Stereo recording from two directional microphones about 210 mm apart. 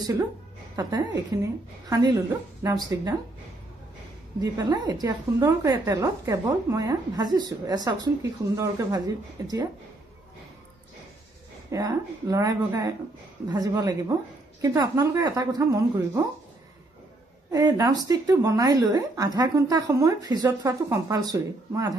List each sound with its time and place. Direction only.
0.7 s a woman's voice: 20° right (ahead or behind)
4.4 s a woman's voice: 20° right (ahead or behind)
11.7 s a woman's voice: 15° right (ahead or behind)
17.5 s a woman's voice: 15° right (ahead or behind)